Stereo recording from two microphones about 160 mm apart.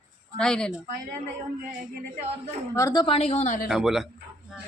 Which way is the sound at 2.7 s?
25° left (ahead or behind).